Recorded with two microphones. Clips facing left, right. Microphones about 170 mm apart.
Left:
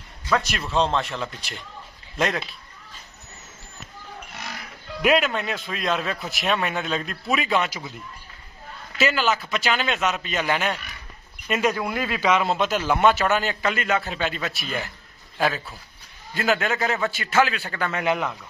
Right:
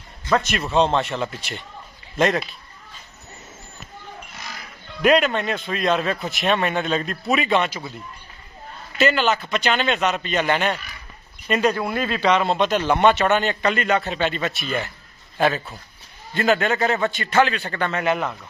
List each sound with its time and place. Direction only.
0.4 s a man's voice: centre (ahead or behind)
5.0 s a man's voice: 5° left (ahead or behind)
8.9 s a man's voice: centre (ahead or behind)